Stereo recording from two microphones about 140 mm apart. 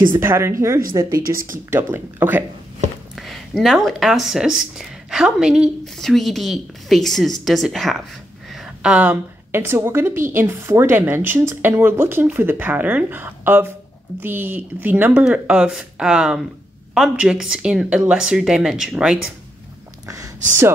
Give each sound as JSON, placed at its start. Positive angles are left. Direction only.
{"t": 0.2, "sound": "a woman's voice", "side_deg": -15}
{"t": 1.7, "sound": "a woman's voice", "side_deg": -15}
{"t": 3.2, "sound": "a woman's voice", "side_deg": 0}